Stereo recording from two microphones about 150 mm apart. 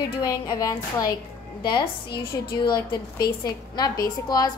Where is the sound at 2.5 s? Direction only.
30° left (ahead or behind).